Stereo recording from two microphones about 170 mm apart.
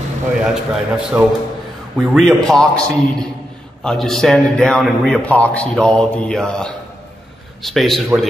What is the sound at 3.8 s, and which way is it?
A man's voice, centre (ahead or behind).